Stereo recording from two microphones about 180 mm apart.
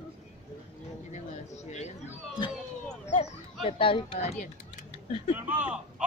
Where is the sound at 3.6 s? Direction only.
30° left (ahead or behind).